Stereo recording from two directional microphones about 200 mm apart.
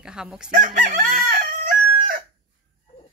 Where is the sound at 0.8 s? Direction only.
50° right (ahead or behind).